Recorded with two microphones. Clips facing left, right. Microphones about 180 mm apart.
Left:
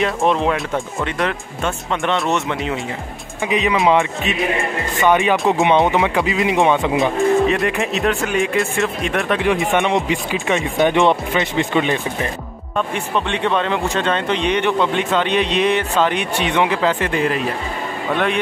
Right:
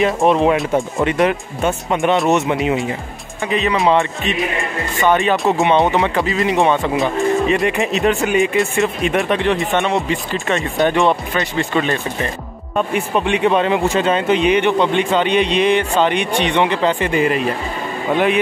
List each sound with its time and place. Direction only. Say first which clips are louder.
0.0 s speech: right 3 dB; 5° right (ahead or behind)
0.7 s speech: right 6 dB; 20° right (ahead or behind)
3.4 s speech: even; 10° left (ahead or behind)
5.5 s speech: right 1 dB; 15° left (ahead or behind)
7.0 s speech: left 1 dB; centre (ahead or behind)
9.5 s speech: even; 10° left (ahead or behind)
12.7 s speech: right 3 dB; 10° right (ahead or behind)